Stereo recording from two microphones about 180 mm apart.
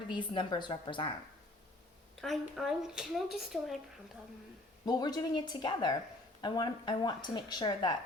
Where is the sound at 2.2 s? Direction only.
Centre (ahead or behind).